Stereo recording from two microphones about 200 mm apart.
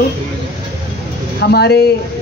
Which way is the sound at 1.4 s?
55° left (ahead or behind).